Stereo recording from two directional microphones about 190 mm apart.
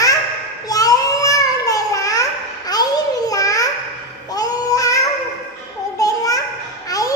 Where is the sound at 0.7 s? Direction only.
20° left (ahead or behind).